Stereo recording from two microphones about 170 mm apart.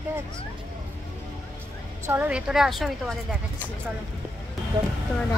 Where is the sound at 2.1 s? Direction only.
10° right (ahead or behind).